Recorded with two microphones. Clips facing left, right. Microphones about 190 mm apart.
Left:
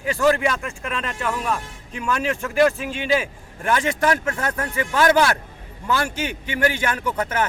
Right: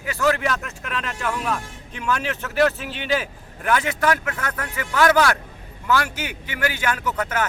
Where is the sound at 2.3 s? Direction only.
10° left (ahead or behind).